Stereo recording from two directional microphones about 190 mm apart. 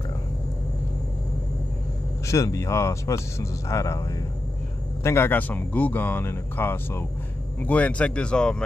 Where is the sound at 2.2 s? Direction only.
15° left (ahead or behind).